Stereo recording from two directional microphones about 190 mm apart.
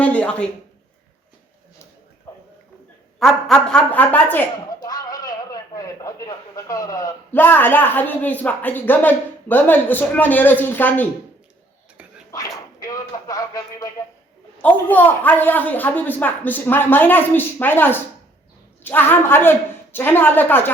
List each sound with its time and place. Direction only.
0.0 s a sound: 5° left (ahead or behind)
3.2 s speech: centre (ahead or behind)
12.3 s speech: 20° left (ahead or behind)